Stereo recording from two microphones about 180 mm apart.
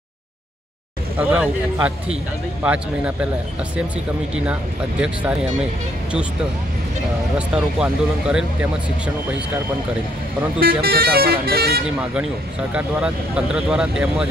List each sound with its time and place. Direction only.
1.1 s speech: 5° right (ahead or behind)
7.3 s speech: 5° right (ahead or behind)
10.6 s speech: 55° right (ahead or behind)
13.6 s speech: 5° right (ahead or behind)